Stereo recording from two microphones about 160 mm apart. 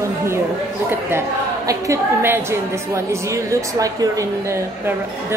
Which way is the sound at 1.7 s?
15° right (ahead or behind).